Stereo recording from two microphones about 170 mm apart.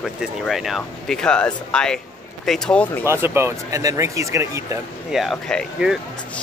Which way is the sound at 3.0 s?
15° right (ahead or behind).